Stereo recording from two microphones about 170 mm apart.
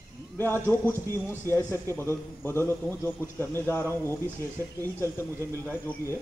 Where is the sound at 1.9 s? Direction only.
15° left (ahead or behind).